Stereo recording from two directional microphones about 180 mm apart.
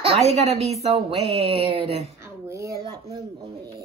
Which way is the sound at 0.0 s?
35° right (ahead or behind).